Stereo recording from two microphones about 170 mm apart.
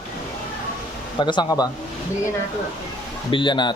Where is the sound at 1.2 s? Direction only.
25° left (ahead or behind).